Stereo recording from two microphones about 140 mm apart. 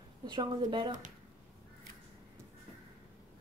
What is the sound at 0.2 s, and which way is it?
Speech, 35° right (ahead or behind).